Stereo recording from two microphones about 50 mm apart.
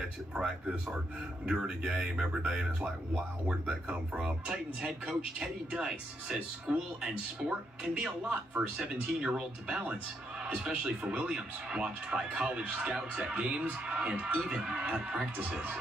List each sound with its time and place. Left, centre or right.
1.4 s speech: centre
8.3 s speech: right
8.8 s speech: centre